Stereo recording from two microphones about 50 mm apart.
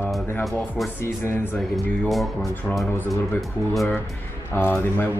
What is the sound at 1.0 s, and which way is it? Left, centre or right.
Speech, left.